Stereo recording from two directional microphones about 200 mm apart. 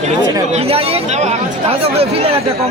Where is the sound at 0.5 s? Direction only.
30° right (ahead or behind).